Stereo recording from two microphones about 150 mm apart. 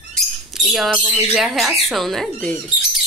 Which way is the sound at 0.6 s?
5° right (ahead or behind).